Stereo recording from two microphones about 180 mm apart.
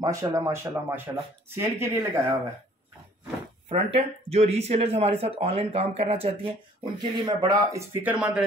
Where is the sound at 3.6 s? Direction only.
35° right (ahead or behind).